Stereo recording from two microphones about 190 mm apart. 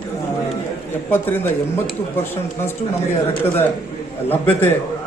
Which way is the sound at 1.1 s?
10° left (ahead or behind).